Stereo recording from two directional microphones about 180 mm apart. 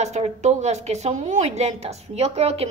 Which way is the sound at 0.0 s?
40° right (ahead or behind).